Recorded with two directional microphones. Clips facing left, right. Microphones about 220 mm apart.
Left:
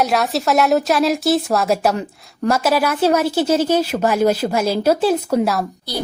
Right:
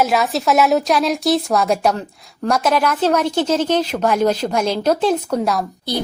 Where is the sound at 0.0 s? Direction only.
Centre (ahead or behind).